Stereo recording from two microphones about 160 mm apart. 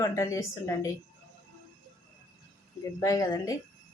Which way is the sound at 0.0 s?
20° left (ahead or behind).